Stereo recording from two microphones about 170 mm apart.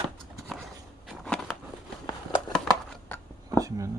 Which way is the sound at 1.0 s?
5° left (ahead or behind).